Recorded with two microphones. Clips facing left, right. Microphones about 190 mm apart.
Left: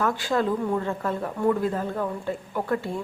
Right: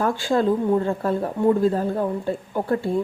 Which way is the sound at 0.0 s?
30° right (ahead or behind).